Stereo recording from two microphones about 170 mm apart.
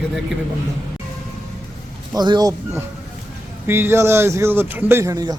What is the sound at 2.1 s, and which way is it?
Speech, 25° right (ahead or behind).